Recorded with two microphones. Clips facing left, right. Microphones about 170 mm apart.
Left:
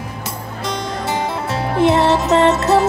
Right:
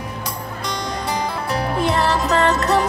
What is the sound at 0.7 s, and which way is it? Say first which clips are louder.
Music: left 3 dB; 25° left (ahead or behind).